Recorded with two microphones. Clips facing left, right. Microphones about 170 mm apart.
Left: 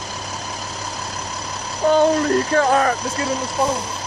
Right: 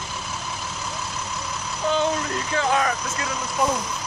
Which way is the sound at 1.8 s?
50° left (ahead or behind).